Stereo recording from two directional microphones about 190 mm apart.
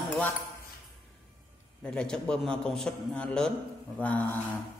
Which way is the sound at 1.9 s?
5° left (ahead or behind).